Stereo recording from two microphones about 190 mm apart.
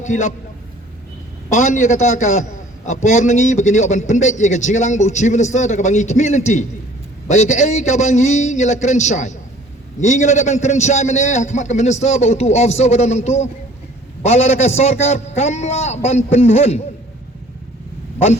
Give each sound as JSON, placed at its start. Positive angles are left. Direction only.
{"t": 0.0, "sound": "a man's voice", "side_deg": 40}
{"t": 1.5, "sound": "a man's voice", "side_deg": 40}